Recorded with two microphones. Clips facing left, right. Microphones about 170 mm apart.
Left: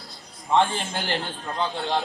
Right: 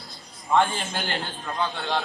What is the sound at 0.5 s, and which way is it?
Speech, 20° left (ahead or behind).